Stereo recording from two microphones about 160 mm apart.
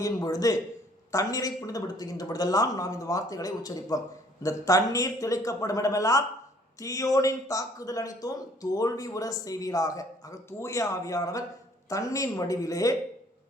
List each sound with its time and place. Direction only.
0.0 s a man's voice: 20° left (ahead or behind)